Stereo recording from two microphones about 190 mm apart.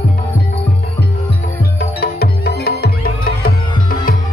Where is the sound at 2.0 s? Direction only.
55° left (ahead or behind).